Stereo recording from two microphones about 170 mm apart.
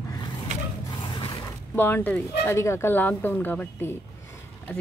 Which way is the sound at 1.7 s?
15° left (ahead or behind).